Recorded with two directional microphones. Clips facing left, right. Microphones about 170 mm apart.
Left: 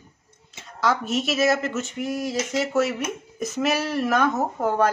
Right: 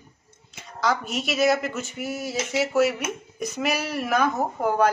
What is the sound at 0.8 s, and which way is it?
Speech, centre (ahead or behind).